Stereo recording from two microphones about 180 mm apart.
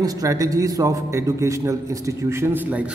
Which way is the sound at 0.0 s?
20° right (ahead or behind).